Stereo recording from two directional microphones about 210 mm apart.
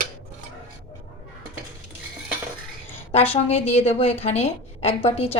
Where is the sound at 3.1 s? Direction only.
30° left (ahead or behind).